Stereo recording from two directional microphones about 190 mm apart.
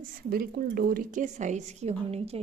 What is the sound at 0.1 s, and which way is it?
Speech, 50° right (ahead or behind).